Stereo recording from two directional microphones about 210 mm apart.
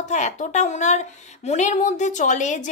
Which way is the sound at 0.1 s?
35° left (ahead or behind).